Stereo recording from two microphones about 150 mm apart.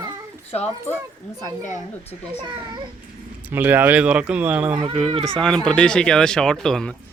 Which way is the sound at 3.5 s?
10° right (ahead or behind).